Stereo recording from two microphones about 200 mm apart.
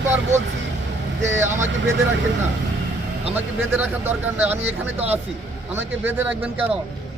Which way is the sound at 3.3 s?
10° right (ahead or behind).